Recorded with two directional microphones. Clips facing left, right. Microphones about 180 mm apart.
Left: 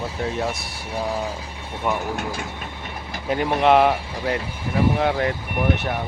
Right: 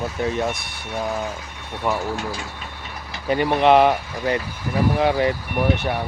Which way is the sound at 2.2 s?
55° left (ahead or behind).